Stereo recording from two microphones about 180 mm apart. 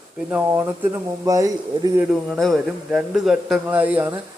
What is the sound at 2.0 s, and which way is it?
A man's voice, centre (ahead or behind).